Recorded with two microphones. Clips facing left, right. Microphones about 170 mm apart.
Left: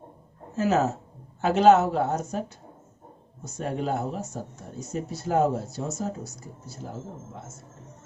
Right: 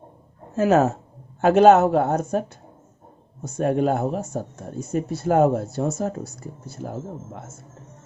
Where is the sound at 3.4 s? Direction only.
55° right (ahead or behind).